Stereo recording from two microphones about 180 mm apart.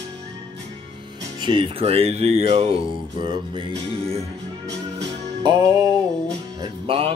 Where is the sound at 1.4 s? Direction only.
25° right (ahead or behind).